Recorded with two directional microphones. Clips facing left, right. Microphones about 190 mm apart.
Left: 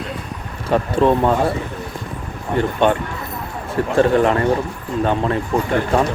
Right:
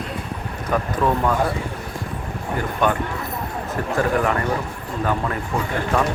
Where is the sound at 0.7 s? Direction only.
25° left (ahead or behind).